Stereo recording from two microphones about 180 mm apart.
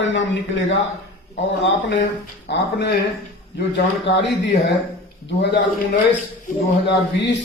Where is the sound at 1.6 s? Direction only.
90° left.